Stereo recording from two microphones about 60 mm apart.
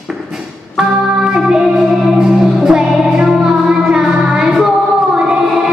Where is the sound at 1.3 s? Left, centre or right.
Centre.